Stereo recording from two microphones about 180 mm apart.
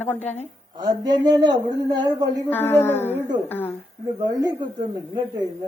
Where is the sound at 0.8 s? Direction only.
20° right (ahead or behind).